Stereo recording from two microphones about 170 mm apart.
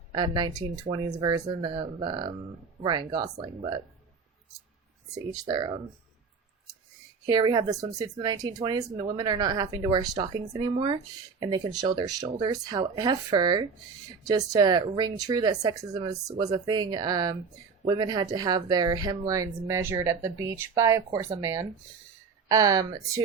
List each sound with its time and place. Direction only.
0.1 s speech: 25° right (ahead or behind)
3.3 s speech: 40° right (ahead or behind)
5.1 s speech: 20° right (ahead or behind)
7.3 s speech: 25° right (ahead or behind)
15.8 s speech: 40° right (ahead or behind)
16.4 s speech: 25° right (ahead or behind)